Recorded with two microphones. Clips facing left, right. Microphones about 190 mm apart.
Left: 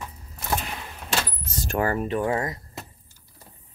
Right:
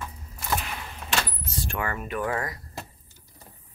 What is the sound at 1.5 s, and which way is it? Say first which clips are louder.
Speech: left 7 dB; 40° left (ahead or behind).